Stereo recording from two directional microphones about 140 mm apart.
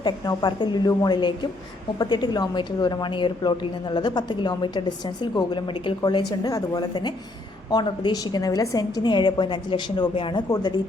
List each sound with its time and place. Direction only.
0.0 s a woman's voice: 30° left (ahead or behind)